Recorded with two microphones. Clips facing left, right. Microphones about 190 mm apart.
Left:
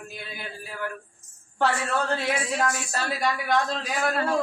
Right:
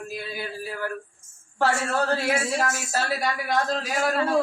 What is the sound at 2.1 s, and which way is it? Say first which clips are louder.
Speech: right 2 dB; 5° right (ahead or behind).